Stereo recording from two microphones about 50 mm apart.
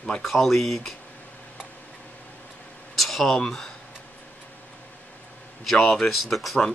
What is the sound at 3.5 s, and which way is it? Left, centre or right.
Speech, centre.